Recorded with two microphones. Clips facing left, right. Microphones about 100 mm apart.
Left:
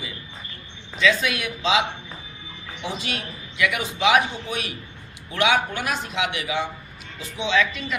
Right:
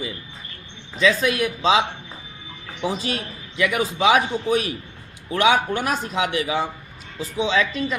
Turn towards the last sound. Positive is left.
turn(degrees=-35)  # may be behind; listen again after turning